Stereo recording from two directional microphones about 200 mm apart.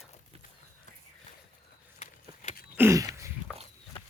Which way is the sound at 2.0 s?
35° left (ahead or behind).